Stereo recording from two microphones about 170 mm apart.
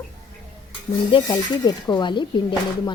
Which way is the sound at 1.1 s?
25° left (ahead or behind).